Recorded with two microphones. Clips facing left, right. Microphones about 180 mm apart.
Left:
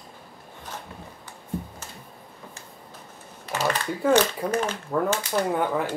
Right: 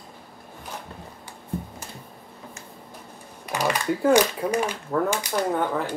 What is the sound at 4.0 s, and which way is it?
Speech, 10° right (ahead or behind).